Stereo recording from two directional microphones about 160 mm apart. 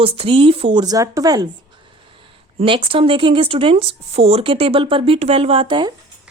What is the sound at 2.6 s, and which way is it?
A woman's voice, 35° right (ahead or behind).